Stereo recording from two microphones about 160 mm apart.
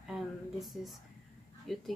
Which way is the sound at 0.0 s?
Centre (ahead or behind).